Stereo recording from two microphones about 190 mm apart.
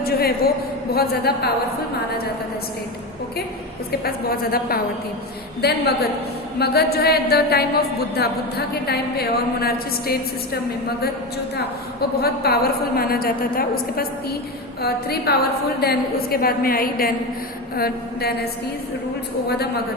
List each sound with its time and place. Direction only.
0.0 s a sound: 55° left (ahead or behind)
0.9 s a woman's voice: 55° left (ahead or behind)
4.0 s a woman's voice: 55° left (ahead or behind)